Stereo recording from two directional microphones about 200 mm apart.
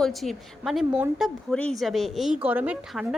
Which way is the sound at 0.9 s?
10° right (ahead or behind).